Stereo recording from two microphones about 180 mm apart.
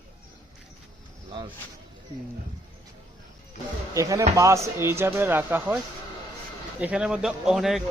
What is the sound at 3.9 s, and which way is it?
Speech, 20° right (ahead or behind).